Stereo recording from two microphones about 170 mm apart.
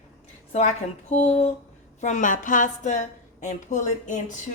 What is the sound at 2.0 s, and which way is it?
A woman's voice, 50° left (ahead or behind).